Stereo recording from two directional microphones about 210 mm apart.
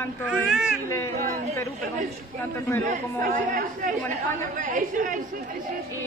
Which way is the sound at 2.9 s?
45° right (ahead or behind).